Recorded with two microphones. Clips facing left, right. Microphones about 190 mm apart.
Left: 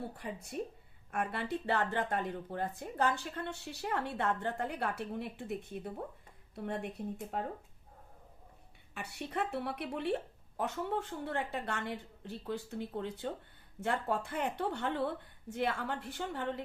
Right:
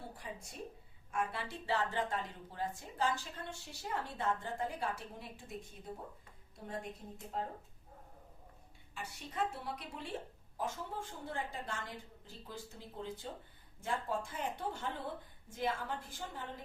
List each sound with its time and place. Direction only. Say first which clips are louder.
0.2 s speech: left 7 dB; 60° left (ahead or behind)
7.3 s a woman's voice: left 1 dB; 65° left (ahead or behind)
9.0 s a woman's voice: left 2 dB; 65° left (ahead or behind)